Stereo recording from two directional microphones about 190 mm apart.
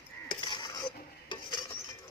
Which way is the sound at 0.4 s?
20° left (ahead or behind).